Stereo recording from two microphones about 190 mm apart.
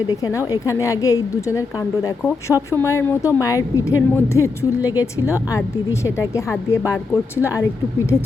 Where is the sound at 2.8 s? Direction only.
15° left (ahead or behind).